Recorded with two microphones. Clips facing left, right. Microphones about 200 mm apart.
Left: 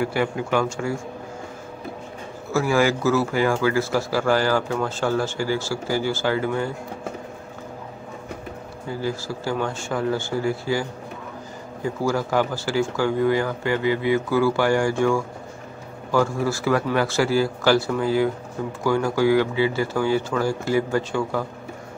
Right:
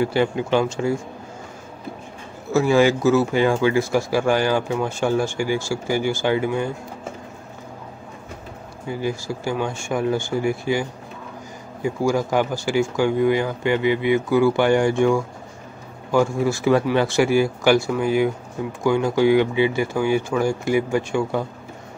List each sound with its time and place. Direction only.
0.0 s speech: 25° right (ahead or behind)
2.5 s speech: 25° right (ahead or behind)
8.8 s speech: 15° right (ahead or behind)